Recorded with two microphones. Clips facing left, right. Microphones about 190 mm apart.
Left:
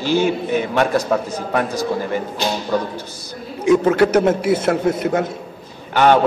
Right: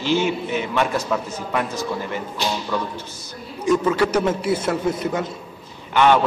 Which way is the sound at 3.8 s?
60° left (ahead or behind).